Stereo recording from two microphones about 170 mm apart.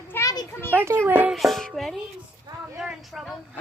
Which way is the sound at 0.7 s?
15° right (ahead or behind).